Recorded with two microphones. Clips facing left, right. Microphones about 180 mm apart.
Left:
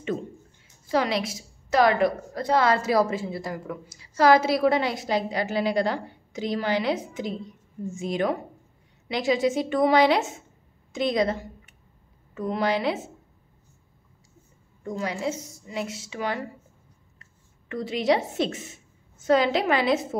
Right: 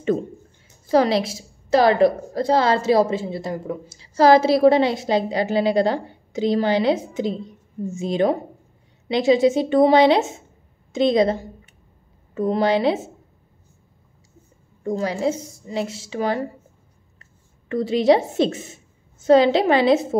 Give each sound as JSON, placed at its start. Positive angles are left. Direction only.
{"t": 0.8, "sound": "a woman's voice", "side_deg": -35}
{"t": 14.8, "sound": "a woman's voice", "side_deg": -35}